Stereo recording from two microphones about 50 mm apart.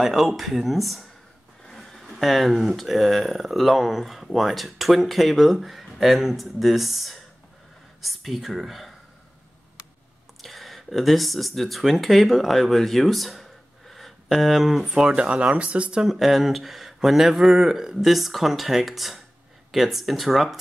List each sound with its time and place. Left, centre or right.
0.0 s speech: centre
1.6 s speech: centre
10.4 s speech: centre
14.9 s speech: centre
16.1 s speech: centre